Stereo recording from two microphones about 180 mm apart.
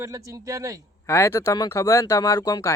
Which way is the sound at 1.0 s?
15° left (ahead or behind).